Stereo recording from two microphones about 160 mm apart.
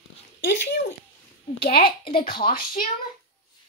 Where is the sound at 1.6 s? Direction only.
75° left (ahead or behind).